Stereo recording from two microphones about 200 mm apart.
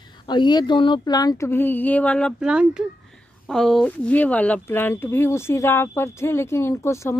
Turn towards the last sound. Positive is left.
turn(degrees=15)  # may be behind; listen again after turning